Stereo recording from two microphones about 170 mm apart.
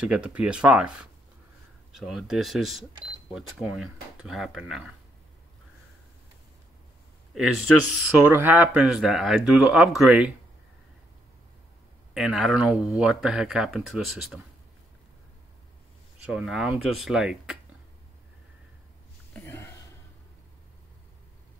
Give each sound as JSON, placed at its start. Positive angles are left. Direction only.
{"t": 0.0, "sound": "speech", "side_deg": -10}
{"t": 7.3, "sound": "speech", "side_deg": 0}
{"t": 12.1, "sound": "speech", "side_deg": -5}
{"t": 16.2, "sound": "speech", "side_deg": -5}
{"t": 19.3, "sound": "a sound", "side_deg": 15}